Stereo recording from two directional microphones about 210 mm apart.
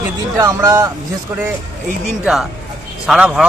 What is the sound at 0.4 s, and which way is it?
Speech, 15° right (ahead or behind).